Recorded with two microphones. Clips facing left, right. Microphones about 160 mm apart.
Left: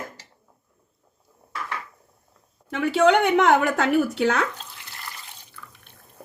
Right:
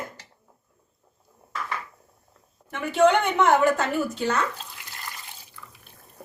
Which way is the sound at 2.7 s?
75° left (ahead or behind).